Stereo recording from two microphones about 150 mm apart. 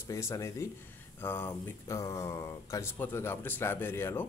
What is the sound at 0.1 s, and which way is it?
Speech, 20° left (ahead or behind).